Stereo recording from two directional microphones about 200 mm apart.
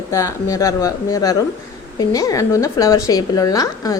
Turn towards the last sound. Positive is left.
turn(degrees=15)  # may be behind; listen again after turning